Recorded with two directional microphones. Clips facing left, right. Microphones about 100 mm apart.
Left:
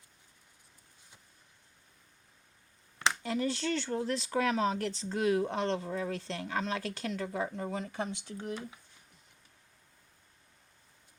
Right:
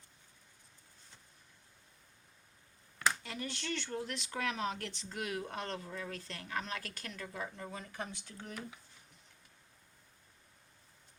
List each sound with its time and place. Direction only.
3.0 s speech: 30° left (ahead or behind)
7.7 s speech: 20° left (ahead or behind)